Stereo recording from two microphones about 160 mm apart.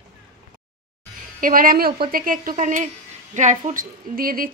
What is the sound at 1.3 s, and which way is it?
A woman's voice, 60° right (ahead or behind).